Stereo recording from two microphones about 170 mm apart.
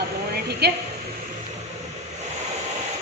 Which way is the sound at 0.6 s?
75° right (ahead or behind).